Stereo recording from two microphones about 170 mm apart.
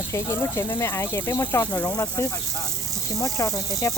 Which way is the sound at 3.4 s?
20° left (ahead or behind).